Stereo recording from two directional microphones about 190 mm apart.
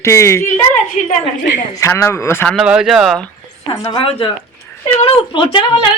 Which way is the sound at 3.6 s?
20° left (ahead or behind).